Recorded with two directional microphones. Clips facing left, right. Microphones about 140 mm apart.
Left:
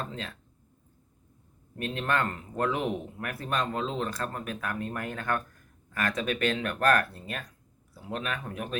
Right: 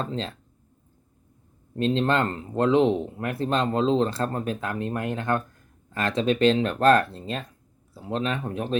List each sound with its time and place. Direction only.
0.0 s speech: 30° right (ahead or behind)
1.8 s speech: 25° right (ahead or behind)